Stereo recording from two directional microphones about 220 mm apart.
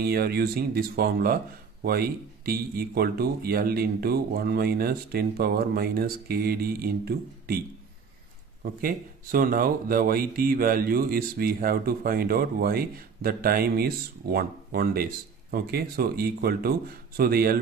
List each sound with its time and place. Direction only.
0.0 s speech: 45° right (ahead or behind)
8.8 s speech: 40° right (ahead or behind)